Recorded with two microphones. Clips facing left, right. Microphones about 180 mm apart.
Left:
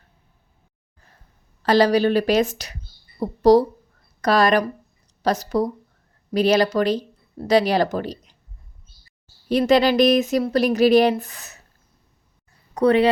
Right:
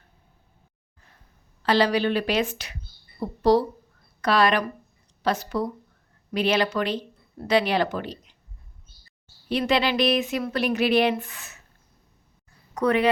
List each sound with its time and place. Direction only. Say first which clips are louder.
1.6 s speech: left 5 dB; 40° left (ahead or behind)
9.5 s speech: left 6 dB; 40° left (ahead or behind)
12.7 s speech: left 5 dB; 30° left (ahead or behind)